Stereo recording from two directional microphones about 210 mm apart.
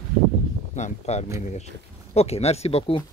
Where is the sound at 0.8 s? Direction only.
35° left (ahead or behind).